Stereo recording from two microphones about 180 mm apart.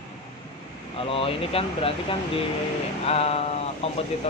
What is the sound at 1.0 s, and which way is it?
Speech, 30° left (ahead or behind).